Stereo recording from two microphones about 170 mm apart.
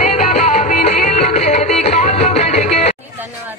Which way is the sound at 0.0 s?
45° left (ahead or behind).